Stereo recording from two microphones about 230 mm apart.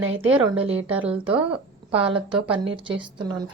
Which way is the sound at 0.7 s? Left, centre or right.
Centre.